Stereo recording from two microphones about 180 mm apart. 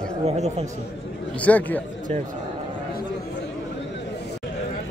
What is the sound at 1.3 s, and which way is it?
Speech, 10° left (ahead or behind).